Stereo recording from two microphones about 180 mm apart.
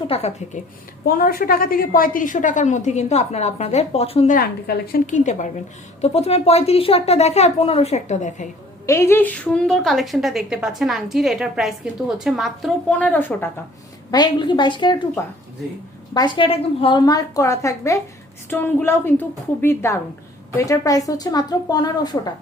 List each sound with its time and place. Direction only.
0.1 s a woman's voice: 35° left (ahead or behind)
1.0 s a woman's voice: 55° left (ahead or behind); by 4.4 s 35° left (ahead or behind)
4.4 s a woman's voice: 55° left (ahead or behind)
8.9 s a woman's voice: 15° left (ahead or behind)
14.1 s a woman's voice: 25° left (ahead or behind)
16.1 s a woman's voice: 25° left (ahead or behind)